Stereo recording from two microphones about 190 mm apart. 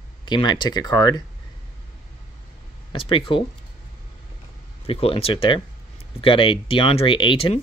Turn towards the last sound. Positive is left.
turn(degrees=25)  # may be behind; listen again after turning